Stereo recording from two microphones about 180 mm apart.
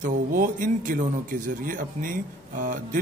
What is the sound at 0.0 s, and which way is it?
A man's voice, 45° right (ahead or behind).